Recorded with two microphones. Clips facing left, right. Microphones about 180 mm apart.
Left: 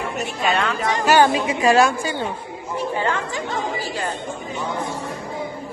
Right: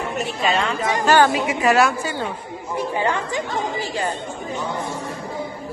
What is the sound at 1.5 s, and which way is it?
Speech, 30° left (ahead or behind).